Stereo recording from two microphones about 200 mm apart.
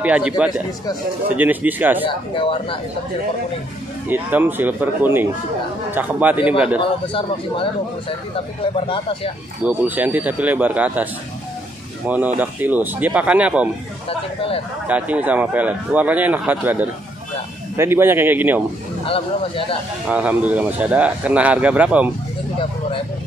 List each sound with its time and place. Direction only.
0.0 s speech: 5° right (ahead or behind)
2.0 s a man's voice: 25° left (ahead or behind)
4.1 s speech: 10° right (ahead or behind)
6.8 s a man's voice: 25° left (ahead or behind)
8.7 s a man's voice: 25° left (ahead or behind)
9.6 s speech: 10° right (ahead or behind)
12.4 s speech: 10° right (ahead or behind)
14.0 s a man's voice: 25° left (ahead or behind)
14.9 s speech: 5° right (ahead or behind)
19.0 s a man's voice: 25° left (ahead or behind)
20.1 s speech: 5° right (ahead or behind)